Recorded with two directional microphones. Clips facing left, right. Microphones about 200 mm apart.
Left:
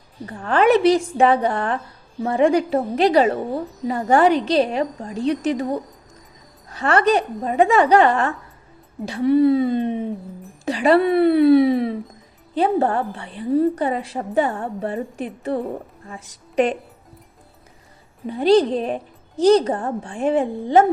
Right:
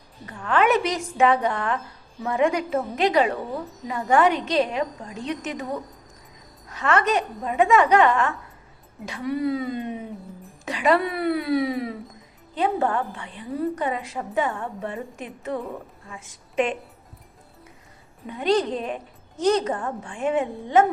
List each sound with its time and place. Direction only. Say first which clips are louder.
0.3 s a woman's voice: left 4 dB; 35° left (ahead or behind)
18.3 s a woman's voice: left 7 dB; 35° left (ahead or behind)